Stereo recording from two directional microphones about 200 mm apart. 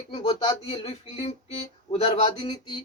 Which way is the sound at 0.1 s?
30° left (ahead or behind).